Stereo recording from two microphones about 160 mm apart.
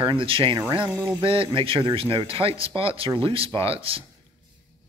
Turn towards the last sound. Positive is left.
turn(degrees=-35)  # may be behind; listen again after turning